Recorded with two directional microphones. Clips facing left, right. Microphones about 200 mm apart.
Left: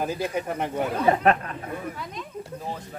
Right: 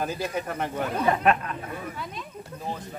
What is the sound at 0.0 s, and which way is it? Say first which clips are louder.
Speech: left 2 dB; 15° left (ahead or behind).